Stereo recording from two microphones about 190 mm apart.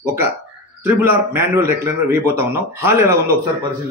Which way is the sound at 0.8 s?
10° right (ahead or behind).